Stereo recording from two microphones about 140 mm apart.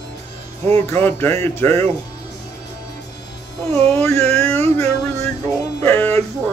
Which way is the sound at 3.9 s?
20° left (ahead or behind).